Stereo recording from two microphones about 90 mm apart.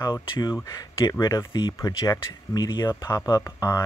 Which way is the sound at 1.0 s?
55° left (ahead or behind).